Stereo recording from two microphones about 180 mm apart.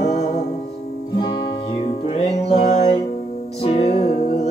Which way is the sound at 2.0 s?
35° left (ahead or behind).